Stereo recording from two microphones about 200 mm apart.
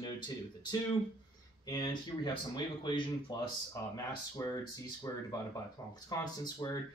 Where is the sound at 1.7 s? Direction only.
20° left (ahead or behind).